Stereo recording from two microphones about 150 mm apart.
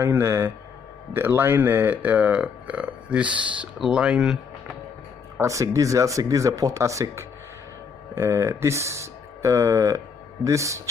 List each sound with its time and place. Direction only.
0.0 s speech: 15° right (ahead or behind)
5.4 s speech: 20° right (ahead or behind)